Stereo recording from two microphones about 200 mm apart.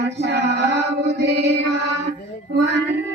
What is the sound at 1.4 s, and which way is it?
Music, 60° right (ahead or behind).